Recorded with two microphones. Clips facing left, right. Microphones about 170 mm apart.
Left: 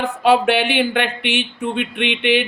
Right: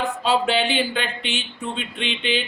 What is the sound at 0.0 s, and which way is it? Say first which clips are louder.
Speech: left 6 dB; 60° left (ahead or behind).